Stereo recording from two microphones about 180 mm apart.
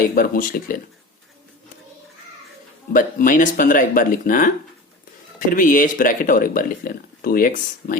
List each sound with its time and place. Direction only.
0.1 s speech: 50° left (ahead or behind)
2.9 s speech: 50° left (ahead or behind)